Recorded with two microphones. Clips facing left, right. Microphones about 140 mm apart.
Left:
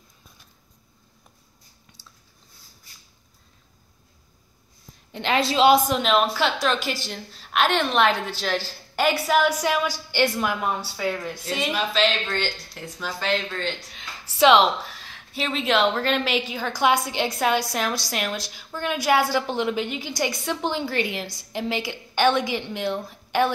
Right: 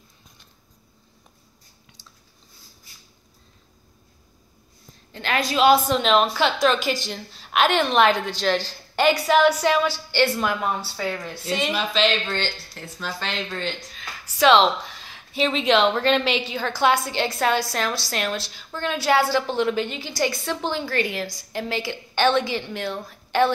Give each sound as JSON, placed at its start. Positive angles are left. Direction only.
{"t": 5.1, "sound": "a woman's voice", "side_deg": 20}
{"t": 5.9, "sound": "a woman's voice", "side_deg": 5}
{"t": 14.3, "sound": "speech", "side_deg": 30}
{"t": 15.0, "sound": "a woman's voice", "side_deg": 0}